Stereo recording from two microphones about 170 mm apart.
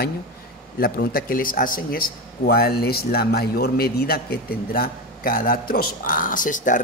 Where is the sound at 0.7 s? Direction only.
60° left (ahead or behind).